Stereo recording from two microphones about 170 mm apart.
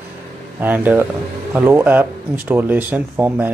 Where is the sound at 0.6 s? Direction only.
10° right (ahead or behind).